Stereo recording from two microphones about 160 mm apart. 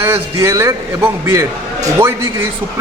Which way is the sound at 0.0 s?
15° right (ahead or behind).